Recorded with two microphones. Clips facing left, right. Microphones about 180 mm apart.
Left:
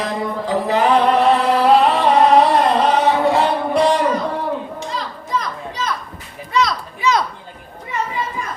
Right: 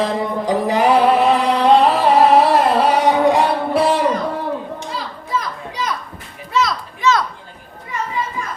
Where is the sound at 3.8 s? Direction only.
5° right (ahead or behind).